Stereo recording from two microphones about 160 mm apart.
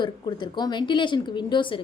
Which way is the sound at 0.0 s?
30° left (ahead or behind).